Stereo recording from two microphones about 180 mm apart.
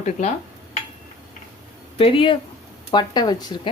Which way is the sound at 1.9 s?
30° left (ahead or behind).